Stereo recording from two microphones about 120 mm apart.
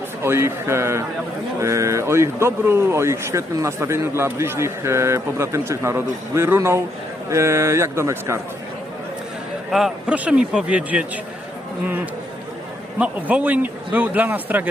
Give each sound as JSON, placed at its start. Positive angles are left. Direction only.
{"t": 0.2, "sound": "speech", "side_deg": -20}
{"t": 9.7, "sound": "a man's voice", "side_deg": -5}
{"t": 13.0, "sound": "a man's voice", "side_deg": -10}